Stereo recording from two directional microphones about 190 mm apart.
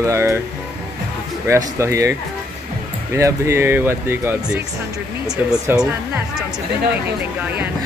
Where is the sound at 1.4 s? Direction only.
15° right (ahead or behind).